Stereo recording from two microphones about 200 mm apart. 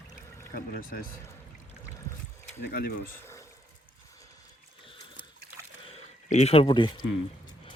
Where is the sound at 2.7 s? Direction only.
50° left (ahead or behind).